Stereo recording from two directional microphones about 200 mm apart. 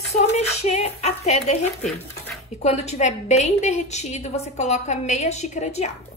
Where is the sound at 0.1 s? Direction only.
35° left (ahead or behind).